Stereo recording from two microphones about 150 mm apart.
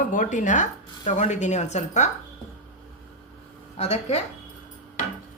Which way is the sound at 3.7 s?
45° left (ahead or behind).